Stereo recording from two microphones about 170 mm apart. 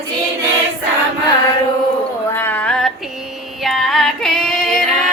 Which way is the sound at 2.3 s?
15° left (ahead or behind).